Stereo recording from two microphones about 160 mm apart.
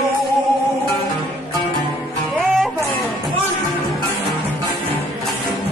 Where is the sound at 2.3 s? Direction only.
Centre (ahead or behind).